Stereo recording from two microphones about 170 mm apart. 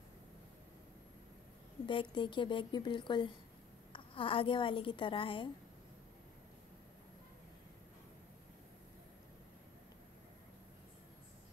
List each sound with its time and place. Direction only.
1.9 s a woman's voice: 30° left (ahead or behind)